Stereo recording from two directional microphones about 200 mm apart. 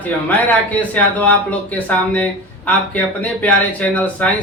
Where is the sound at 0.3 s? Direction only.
5° left (ahead or behind).